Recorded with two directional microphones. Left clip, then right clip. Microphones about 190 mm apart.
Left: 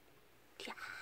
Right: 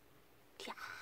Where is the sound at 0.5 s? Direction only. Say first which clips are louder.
Even; centre (ahead or behind).